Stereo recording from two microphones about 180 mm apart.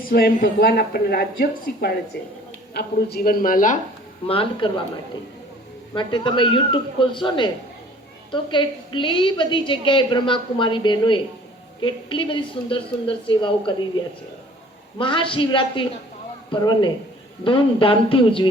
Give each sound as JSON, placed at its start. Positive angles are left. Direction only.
{"t": 0.1, "sound": "speech", "side_deg": 60}
{"t": 2.1, "sound": "a woman's voice", "side_deg": 70}
{"t": 4.3, "sound": "speech", "side_deg": 30}
{"t": 5.9, "sound": "a woman's voice", "side_deg": 25}
{"t": 14.9, "sound": "a woman's voice", "side_deg": 30}